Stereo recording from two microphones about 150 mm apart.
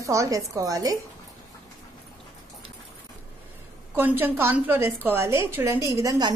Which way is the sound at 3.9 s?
15° right (ahead or behind).